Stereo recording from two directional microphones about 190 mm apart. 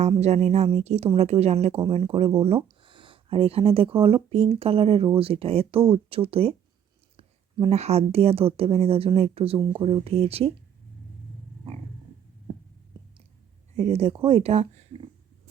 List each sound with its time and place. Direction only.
0.0 s a woman's voice: 35° right (ahead or behind)
13.7 s a woman's voice: 35° right (ahead or behind)